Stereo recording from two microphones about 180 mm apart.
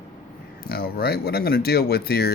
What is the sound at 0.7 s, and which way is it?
Speech, 60° left (ahead or behind).